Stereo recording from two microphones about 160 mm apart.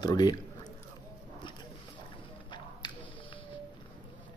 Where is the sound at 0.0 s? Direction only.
25° left (ahead or behind).